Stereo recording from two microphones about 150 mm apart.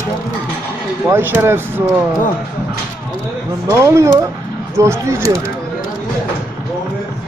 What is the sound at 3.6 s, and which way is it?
Speech, 20° right (ahead or behind).